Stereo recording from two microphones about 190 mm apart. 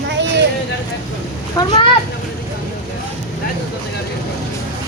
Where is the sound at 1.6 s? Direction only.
20° left (ahead or behind).